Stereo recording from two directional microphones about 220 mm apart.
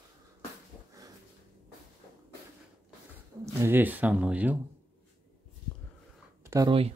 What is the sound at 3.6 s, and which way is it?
Speech, 10° right (ahead or behind).